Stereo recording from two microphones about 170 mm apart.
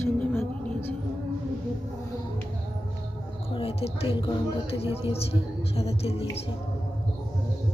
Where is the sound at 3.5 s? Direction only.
35° left (ahead or behind).